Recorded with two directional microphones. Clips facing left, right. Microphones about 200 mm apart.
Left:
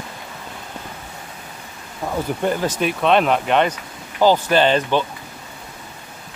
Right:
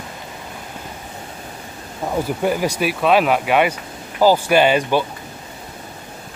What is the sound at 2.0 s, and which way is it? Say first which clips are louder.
Speech: right 2 dB; 10° right (ahead or behind).